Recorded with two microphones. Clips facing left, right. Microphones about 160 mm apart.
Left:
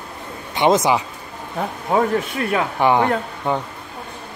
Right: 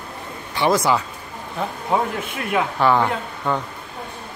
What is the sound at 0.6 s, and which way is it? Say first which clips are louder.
Speech: left 2 dB; 20° left (ahead or behind).